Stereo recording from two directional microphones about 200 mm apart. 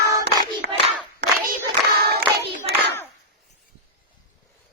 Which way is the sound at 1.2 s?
60° right (ahead or behind).